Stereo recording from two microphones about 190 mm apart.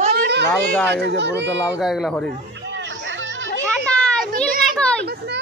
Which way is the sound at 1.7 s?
Centre (ahead or behind).